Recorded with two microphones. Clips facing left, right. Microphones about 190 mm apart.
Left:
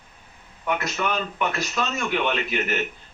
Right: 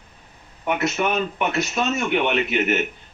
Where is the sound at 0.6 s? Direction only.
25° right (ahead or behind).